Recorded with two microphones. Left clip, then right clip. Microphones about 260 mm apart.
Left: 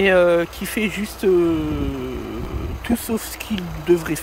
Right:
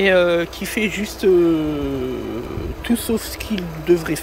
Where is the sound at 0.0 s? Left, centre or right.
Centre.